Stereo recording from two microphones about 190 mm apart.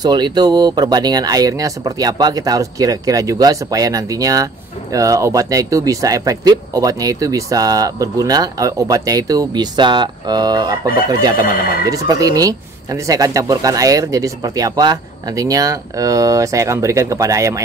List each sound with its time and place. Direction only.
0.0 s speech: 20° right (ahead or behind)